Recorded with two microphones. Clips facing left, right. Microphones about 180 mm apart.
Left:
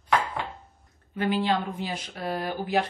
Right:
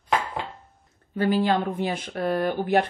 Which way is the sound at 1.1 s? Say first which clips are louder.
Right 3 dB; 45° right (ahead or behind).